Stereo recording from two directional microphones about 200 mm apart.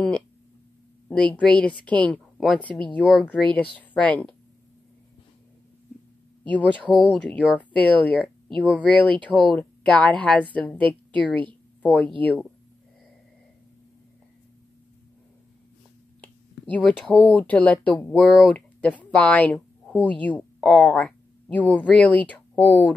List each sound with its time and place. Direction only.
1.0 s a woman's voice: 5° left (ahead or behind)
6.4 s a woman's voice: 5° left (ahead or behind)
16.2 s speech: 5° left (ahead or behind)